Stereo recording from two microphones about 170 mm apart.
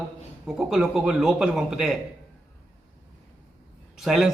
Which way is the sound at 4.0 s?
Centre (ahead or behind).